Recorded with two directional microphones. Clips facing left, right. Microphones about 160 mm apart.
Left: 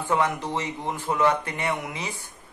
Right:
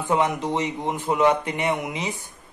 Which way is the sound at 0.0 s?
20° right (ahead or behind).